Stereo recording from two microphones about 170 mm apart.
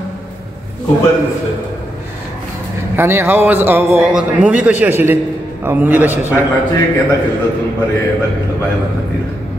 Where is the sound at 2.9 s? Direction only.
15° right (ahead or behind).